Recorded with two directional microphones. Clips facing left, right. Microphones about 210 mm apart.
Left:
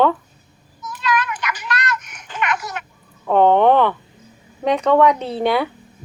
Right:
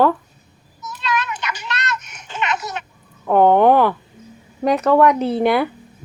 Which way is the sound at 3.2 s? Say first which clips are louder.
Right 1 dB; 10° right (ahead or behind).